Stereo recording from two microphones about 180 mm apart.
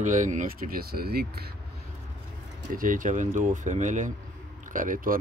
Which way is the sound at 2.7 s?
50° right (ahead or behind).